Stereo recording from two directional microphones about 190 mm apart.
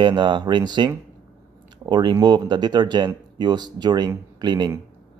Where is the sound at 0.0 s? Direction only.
25° right (ahead or behind).